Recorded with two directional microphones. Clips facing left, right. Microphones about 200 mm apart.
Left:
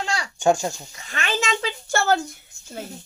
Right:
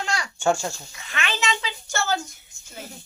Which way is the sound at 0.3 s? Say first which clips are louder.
Left 4 dB; 20° left (ahead or behind).